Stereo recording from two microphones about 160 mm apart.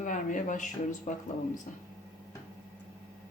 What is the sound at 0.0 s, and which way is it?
Speech, 50° left (ahead or behind).